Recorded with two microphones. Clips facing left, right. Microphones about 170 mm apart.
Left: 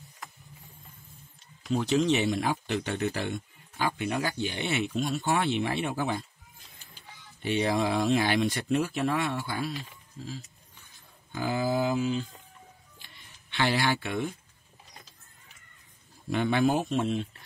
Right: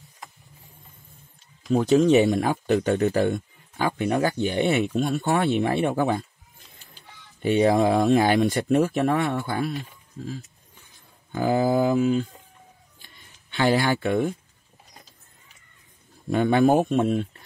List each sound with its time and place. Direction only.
1.7 s speech: 45° right (ahead or behind)
7.4 s speech: 45° right (ahead or behind)
13.0 s a sound: 45° right (ahead or behind)
16.3 s speech: 45° right (ahead or behind)